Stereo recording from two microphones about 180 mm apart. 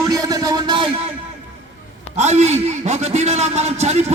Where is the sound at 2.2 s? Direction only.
40° right (ahead or behind).